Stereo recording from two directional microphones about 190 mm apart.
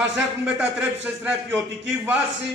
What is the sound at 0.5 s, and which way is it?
A man's voice, 5° right (ahead or behind).